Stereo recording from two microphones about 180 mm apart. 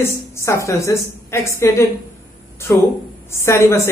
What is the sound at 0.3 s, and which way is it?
A woman's voice, 15° left (ahead or behind).